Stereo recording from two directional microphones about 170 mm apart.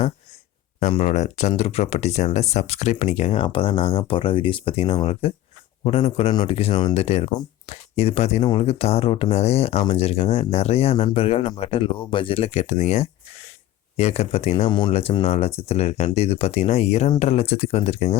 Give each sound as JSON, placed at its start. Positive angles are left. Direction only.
{"t": 0.8, "sound": "speech", "side_deg": 40}